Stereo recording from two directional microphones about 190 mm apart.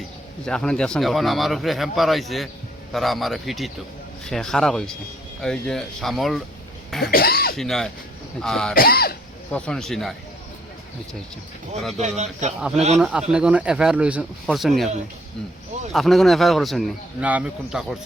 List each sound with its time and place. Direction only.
0.4 s speech: 5° left (ahead or behind)
7.1 s speech: 55° left (ahead or behind)
7.5 s speech: centre (ahead or behind)
8.7 s speech: 50° left (ahead or behind)
9.5 s speech: 5° left (ahead or behind)
11.9 s speech: 35° right (ahead or behind)
12.5 s speech: 5° right (ahead or behind)
15.9 s speech: centre (ahead or behind)